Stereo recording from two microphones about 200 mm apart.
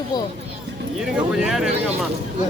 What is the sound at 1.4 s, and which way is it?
Speech, centre (ahead or behind).